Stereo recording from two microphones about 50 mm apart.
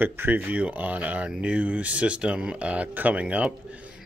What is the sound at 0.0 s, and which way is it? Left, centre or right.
Speech, right.